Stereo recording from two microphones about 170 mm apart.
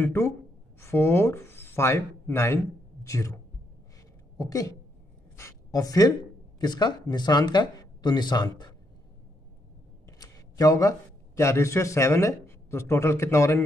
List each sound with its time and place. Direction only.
0.0 s speech: 15° left (ahead or behind)
4.4 s speech: 20° left (ahead or behind)
10.0 s speech: 20° left (ahead or behind)